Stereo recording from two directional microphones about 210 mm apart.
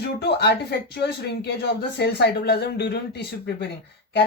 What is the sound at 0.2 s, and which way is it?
Speech, 50° left (ahead or behind).